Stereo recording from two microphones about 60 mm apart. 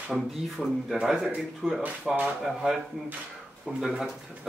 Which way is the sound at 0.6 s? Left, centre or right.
Centre.